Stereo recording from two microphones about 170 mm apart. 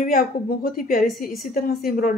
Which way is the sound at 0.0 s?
55° left (ahead or behind).